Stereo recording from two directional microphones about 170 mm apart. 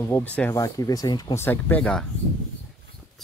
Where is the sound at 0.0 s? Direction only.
10° left (ahead or behind).